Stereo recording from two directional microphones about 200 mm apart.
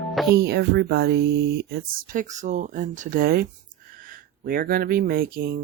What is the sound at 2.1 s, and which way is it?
Speech, 35° right (ahead or behind).